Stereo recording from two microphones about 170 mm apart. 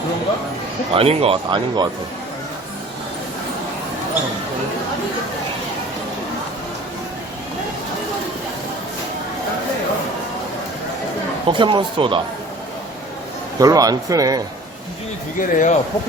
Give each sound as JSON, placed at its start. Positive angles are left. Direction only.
{"t": 0.9, "sound": "speech", "side_deg": -35}
{"t": 11.4, "sound": "a man's voice", "side_deg": -30}
{"t": 13.6, "sound": "a man's voice", "side_deg": -20}
{"t": 15.4, "sound": "speech", "side_deg": 50}